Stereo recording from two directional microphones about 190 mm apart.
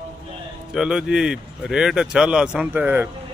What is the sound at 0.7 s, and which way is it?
Speech, 5° right (ahead or behind).